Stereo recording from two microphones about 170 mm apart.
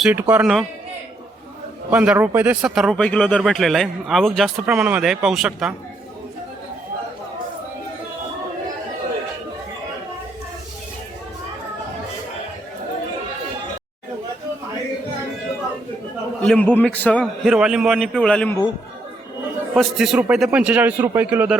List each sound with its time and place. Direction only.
0.0 s a man's voice: 10° right (ahead or behind)
1.9 s speech: 10° right (ahead or behind)
16.4 s a man's voice: 5° left (ahead or behind)
17.5 s speech: 5° right (ahead or behind)
19.7 s a man's voice: centre (ahead or behind)